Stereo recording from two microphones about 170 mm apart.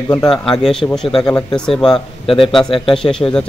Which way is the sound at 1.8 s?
30° left (ahead or behind).